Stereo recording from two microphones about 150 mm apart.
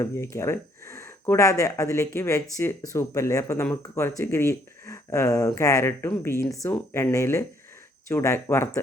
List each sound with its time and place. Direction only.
0.0 s speech: 20° left (ahead or behind)